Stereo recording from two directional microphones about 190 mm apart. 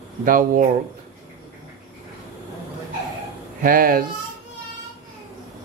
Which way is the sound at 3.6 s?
50° right (ahead or behind).